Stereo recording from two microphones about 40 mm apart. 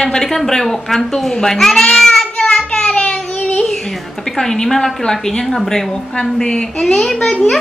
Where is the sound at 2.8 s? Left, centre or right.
Left.